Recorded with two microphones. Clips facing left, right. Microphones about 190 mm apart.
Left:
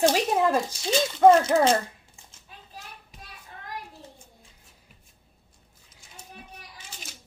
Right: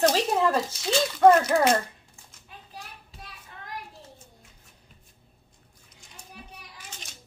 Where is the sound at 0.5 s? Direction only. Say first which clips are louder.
Left 1 dB; 25° left (ahead or behind).